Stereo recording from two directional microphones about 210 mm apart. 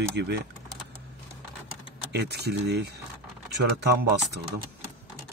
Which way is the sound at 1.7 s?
50° right (ahead or behind).